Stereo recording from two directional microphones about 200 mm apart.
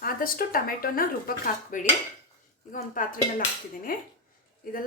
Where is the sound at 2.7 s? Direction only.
40° left (ahead or behind).